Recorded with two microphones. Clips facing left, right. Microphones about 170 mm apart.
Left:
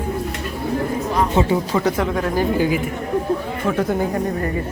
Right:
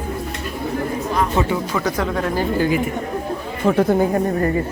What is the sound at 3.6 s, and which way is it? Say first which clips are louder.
Speech: right 5 dB; 30° right (ahead or behind).